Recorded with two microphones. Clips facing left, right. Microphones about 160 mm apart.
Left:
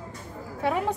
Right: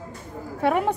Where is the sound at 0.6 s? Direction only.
60° right (ahead or behind).